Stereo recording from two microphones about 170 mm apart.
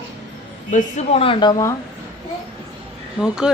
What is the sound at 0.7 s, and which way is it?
A woman's voice, 40° left (ahead or behind).